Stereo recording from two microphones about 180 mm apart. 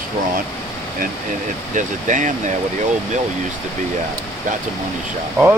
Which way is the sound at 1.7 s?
45° right (ahead or behind).